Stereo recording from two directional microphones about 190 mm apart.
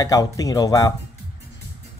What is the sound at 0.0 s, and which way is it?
Speech, 20° left (ahead or behind).